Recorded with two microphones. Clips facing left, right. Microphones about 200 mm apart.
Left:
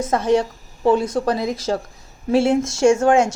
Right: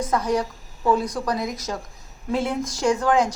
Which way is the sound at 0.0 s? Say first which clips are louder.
Left 5 dB; 25° left (ahead or behind).